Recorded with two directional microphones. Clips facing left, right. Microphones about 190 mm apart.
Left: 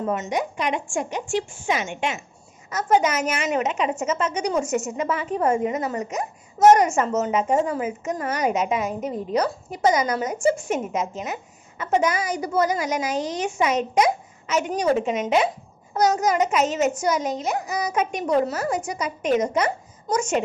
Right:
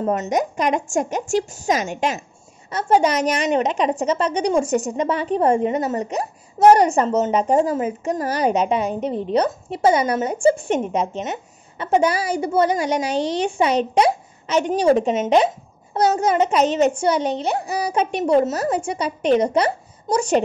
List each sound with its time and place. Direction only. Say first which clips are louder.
0.0 s a woman's voice: right 4 dB; 40° right (ahead or behind)